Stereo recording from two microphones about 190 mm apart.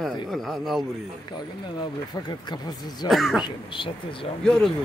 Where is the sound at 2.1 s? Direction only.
20° left (ahead or behind).